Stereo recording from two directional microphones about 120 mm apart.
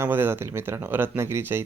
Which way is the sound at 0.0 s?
20° right (ahead or behind).